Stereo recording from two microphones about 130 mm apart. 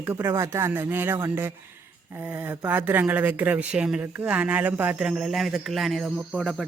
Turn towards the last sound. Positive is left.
turn(degrees=-5)  # may be behind; listen again after turning